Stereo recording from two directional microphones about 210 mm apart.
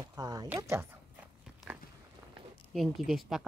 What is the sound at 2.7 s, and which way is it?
Speech, centre (ahead or behind).